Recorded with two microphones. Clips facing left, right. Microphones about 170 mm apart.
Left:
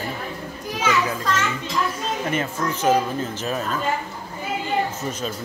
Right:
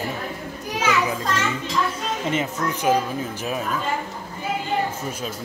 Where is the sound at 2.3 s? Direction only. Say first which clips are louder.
Right 1 dB; 15° right (ahead or behind).